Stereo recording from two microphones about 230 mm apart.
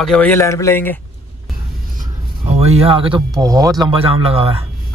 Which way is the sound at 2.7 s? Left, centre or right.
Right.